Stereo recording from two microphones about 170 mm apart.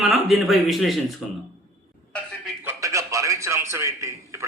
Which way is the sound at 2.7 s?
20° right (ahead or behind).